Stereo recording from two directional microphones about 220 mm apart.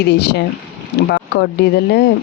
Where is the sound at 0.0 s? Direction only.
50° left (ahead or behind).